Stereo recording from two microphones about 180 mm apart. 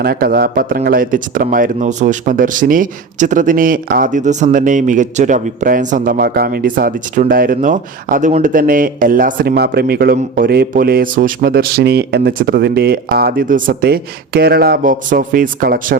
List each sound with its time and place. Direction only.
0.0 s speech: 55° right (ahead or behind)